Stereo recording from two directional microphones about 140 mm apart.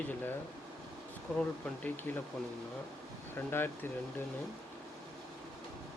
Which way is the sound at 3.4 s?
15° left (ahead or behind).